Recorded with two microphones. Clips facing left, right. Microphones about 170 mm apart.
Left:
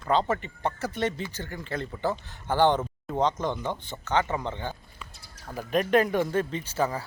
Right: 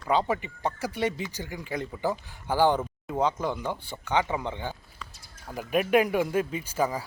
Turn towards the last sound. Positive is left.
turn(degrees=-10)  # may be behind; listen again after turning